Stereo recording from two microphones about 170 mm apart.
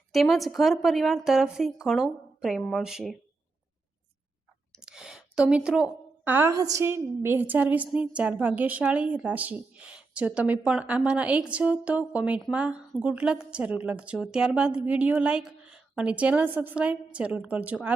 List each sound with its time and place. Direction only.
0.1 s a woman's voice: centre (ahead or behind)
4.7 s a woman's voice: 5° right (ahead or behind)